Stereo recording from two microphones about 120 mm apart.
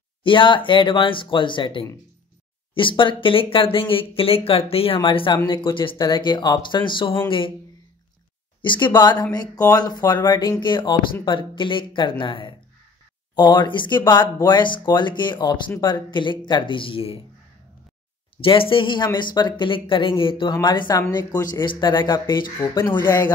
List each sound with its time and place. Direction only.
0.2 s speech: 45° left (ahead or behind)
8.6 s speech: 40° left (ahead or behind)
18.4 s speech: 45° left (ahead or behind)
22.6 s a man's voice: 20° left (ahead or behind)